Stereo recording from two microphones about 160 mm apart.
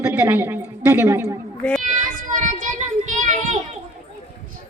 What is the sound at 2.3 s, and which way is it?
Child singing, 50° right (ahead or behind).